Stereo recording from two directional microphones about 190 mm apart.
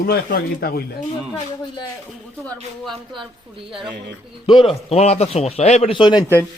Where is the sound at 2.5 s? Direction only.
Centre (ahead or behind).